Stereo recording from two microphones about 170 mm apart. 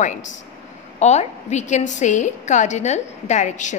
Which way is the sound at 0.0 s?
45° left (ahead or behind).